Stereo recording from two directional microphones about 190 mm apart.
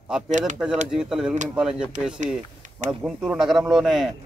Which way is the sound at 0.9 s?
5° right (ahead or behind).